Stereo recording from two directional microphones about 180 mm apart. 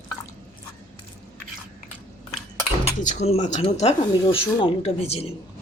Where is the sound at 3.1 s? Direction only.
40° left (ahead or behind).